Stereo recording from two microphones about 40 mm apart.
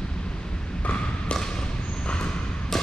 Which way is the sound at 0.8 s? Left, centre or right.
Left.